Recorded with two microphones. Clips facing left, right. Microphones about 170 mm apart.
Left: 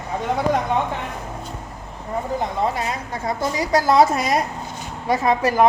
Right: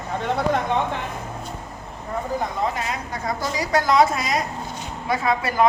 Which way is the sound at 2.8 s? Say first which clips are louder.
Left 2 dB; 25° left (ahead or behind).